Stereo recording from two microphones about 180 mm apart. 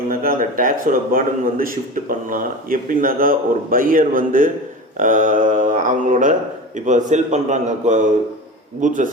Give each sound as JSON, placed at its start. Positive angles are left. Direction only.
{"t": 0.1, "sound": "a man's voice", "side_deg": -55}